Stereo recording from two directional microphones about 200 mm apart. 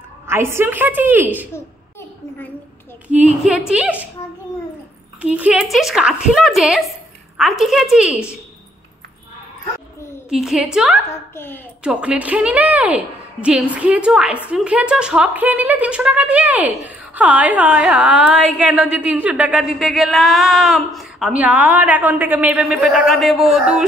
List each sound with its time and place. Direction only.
0.3 s a woman's voice: 10° right (ahead or behind)
1.5 s a sound: 10° left (ahead or behind)
3.1 s a woman's voice: 35° right (ahead or behind)
3.4 s a woman's voice: 5° right (ahead or behind)
5.2 s a woman's voice: 5° right (ahead or behind)
10.3 s a woman's voice: centre (ahead or behind)
11.1 s a woman's voice: 10° left (ahead or behind)
11.8 s a woman's voice: 5° right (ahead or behind)